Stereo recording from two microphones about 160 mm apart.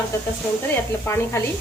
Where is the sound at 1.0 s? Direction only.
15° left (ahead or behind).